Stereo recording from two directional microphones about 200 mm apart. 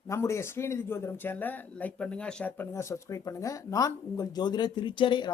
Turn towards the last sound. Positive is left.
turn(degrees=25)  # may be behind; listen again after turning